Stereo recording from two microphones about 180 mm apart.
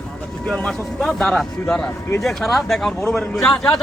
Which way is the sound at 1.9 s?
15° left (ahead or behind).